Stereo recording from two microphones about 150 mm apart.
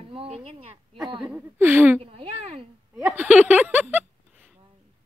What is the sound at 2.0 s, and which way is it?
Speech, 40° right (ahead or behind).